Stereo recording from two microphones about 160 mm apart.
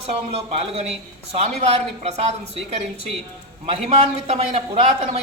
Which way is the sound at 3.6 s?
40° right (ahead or behind).